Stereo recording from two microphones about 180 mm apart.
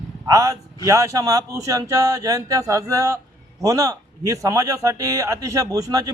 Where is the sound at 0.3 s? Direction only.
20° right (ahead or behind).